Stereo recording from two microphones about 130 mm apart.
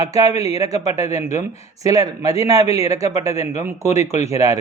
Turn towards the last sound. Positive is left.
turn(degrees=-25)  # may be behind; listen again after turning